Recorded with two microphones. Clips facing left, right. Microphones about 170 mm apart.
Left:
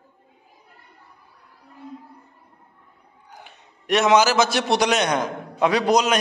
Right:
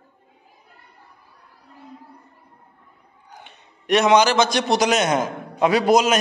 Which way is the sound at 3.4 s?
Centre (ahead or behind).